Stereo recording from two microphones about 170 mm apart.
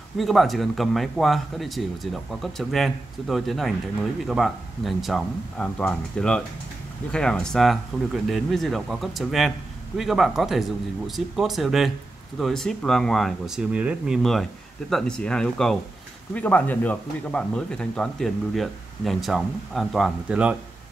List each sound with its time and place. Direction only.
0.2 s speech: centre (ahead or behind)